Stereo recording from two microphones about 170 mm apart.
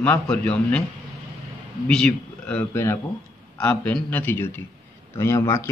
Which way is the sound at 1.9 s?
5° left (ahead or behind).